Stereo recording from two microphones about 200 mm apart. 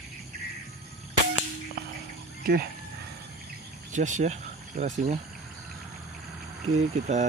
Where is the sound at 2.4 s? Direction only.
50° right (ahead or behind).